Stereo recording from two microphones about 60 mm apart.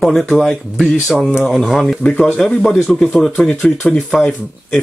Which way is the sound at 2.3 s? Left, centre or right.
Centre.